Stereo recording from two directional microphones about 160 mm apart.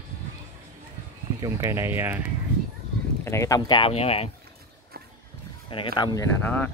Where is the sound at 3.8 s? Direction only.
40° left (ahead or behind).